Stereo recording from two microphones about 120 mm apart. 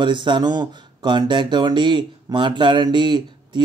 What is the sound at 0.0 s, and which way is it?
A man's voice, 40° right (ahead or behind).